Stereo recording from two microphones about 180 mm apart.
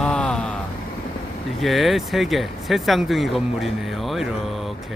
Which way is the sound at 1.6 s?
Centre (ahead or behind).